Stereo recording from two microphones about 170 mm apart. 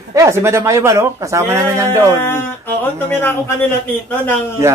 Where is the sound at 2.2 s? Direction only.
10° left (ahead or behind).